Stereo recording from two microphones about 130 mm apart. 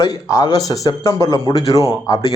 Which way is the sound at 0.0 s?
25° left (ahead or behind).